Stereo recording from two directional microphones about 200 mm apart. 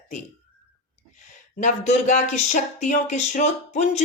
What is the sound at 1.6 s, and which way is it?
A woman's voice, 35° left (ahead or behind).